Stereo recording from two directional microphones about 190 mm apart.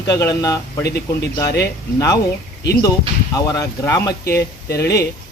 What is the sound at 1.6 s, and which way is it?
Speech, 15° left (ahead or behind).